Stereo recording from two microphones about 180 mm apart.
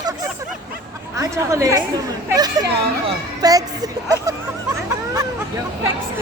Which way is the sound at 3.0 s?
20° right (ahead or behind).